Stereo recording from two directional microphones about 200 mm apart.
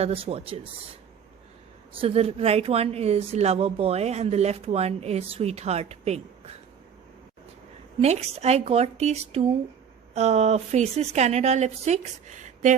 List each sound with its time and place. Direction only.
0.0 s speech: 30° right (ahead or behind)
2.0 s speech: 30° right (ahead or behind)
8.0 s speech: 35° right (ahead or behind)